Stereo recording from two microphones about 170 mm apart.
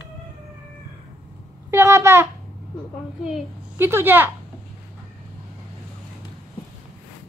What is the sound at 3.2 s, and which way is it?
A woman's voice, 10° right (ahead or behind).